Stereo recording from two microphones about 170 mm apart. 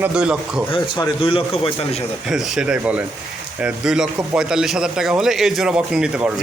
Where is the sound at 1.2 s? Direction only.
30° left (ahead or behind).